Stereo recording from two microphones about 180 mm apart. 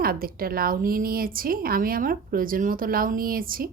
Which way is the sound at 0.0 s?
55° right (ahead or behind).